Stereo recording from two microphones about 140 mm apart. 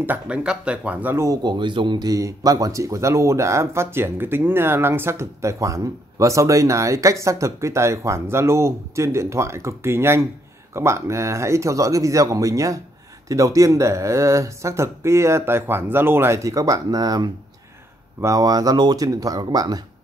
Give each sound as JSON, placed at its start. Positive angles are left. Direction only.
{"t": 0.0, "sound": "speech", "side_deg": -10}